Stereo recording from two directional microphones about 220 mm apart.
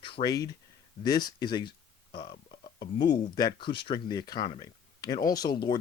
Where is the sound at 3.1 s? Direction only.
20° left (ahead or behind).